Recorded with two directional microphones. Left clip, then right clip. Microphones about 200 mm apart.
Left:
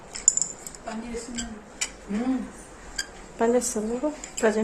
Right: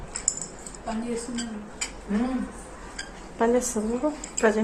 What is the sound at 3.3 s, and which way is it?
A woman's voice, 20° left (ahead or behind).